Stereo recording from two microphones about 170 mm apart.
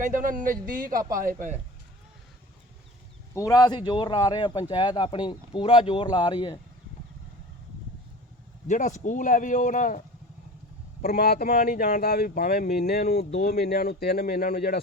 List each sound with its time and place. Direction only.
0.0 s a man's voice: 50° right (ahead or behind)
3.3 s speech: 20° left (ahead or behind)
8.6 s a man's voice: 45° left (ahead or behind)
11.0 s speech: 65° left (ahead or behind)